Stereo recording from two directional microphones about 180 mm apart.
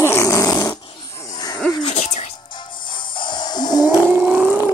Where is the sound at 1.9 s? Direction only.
40° left (ahead or behind).